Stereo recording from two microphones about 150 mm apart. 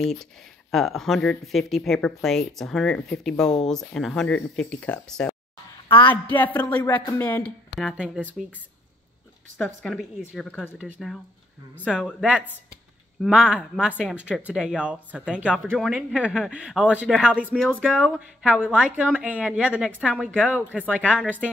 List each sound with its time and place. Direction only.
0.0 s speech: centre (ahead or behind)
5.9 s a woman's voice: 35° left (ahead or behind)
6.2 s music: 10° left (ahead or behind)
7.8 s speech: 5° right (ahead or behind)
9.8 s music: 5° left (ahead or behind)
11.0 s speech: centre (ahead or behind)